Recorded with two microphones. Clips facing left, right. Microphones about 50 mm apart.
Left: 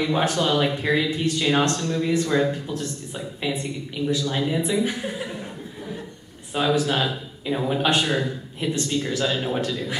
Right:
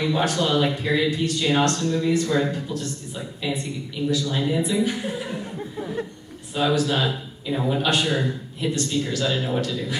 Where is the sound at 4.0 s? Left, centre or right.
Left.